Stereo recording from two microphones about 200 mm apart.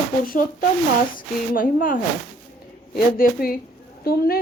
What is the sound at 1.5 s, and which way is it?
Speech, 45° left (ahead or behind).